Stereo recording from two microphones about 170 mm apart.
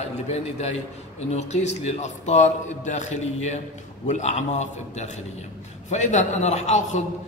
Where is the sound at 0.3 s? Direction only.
40° left (ahead or behind).